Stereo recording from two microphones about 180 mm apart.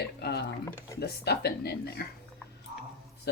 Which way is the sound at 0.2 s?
65° left (ahead or behind).